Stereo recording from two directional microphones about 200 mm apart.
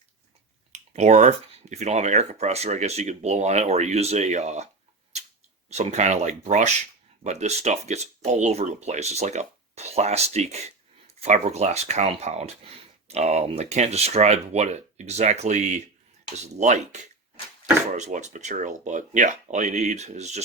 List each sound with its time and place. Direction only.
0.7 s speech: 35° right (ahead or behind)
5.7 s speech: 35° right (ahead or behind)